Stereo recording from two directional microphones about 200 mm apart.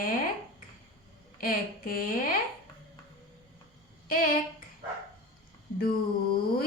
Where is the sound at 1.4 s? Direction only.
45° left (ahead or behind).